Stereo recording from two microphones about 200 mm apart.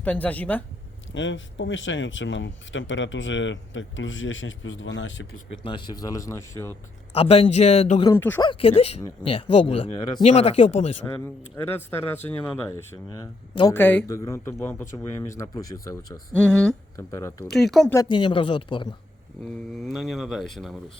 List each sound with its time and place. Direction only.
0.0 s speech: 5° left (ahead or behind)
1.1 s speech: 70° left (ahead or behind)
5.5 s speech: 25° left (ahead or behind)
7.1 s speech: 30° left (ahead or behind)
8.1 s speech: 10° left (ahead or behind)
8.4 s speech: 30° left (ahead or behind)
11.5 s speech: 10° left (ahead or behind)
17.5 s speech: centre (ahead or behind)
17.9 s speech: 20° left (ahead or behind)
19.7 s speech: centre (ahead or behind)